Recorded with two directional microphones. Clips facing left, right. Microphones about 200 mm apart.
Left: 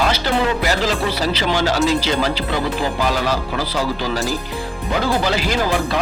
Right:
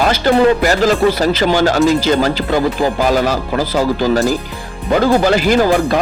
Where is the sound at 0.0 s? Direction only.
50° right (ahead or behind).